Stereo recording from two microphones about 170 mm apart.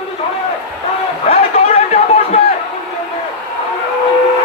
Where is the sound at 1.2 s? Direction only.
40° left (ahead or behind).